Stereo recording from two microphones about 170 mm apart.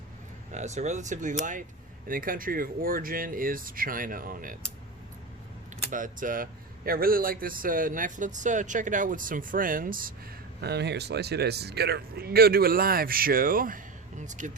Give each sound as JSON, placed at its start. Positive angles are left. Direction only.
{"t": 0.5, "sound": "a man's voice", "side_deg": -40}
{"t": 5.9, "sound": "speech", "side_deg": -50}
{"t": 10.6, "sound": "a man's voice", "side_deg": -75}